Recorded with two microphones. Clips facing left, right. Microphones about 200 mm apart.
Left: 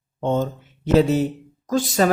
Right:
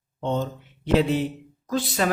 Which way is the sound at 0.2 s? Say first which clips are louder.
Left 4 dB; 50° left (ahead or behind).